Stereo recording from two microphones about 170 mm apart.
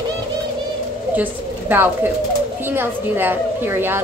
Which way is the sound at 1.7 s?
10° right (ahead or behind).